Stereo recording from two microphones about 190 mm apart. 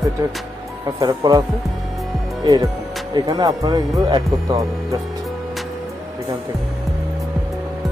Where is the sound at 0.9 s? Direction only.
20° right (ahead or behind).